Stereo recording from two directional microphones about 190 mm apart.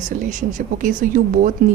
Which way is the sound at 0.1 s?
40° right (ahead or behind).